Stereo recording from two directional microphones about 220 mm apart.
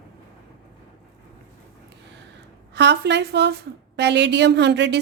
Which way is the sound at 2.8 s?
50° right (ahead or behind).